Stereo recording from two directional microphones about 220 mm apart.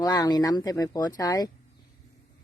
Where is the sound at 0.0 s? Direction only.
15° left (ahead or behind).